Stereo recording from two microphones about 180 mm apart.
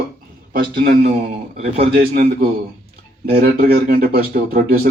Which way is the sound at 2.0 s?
40° right (ahead or behind).